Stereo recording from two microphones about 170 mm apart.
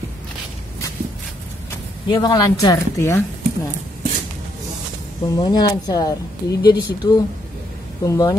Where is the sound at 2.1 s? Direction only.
20° left (ahead or behind).